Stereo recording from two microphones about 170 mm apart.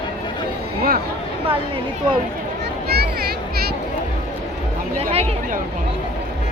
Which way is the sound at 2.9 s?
65° right (ahead or behind).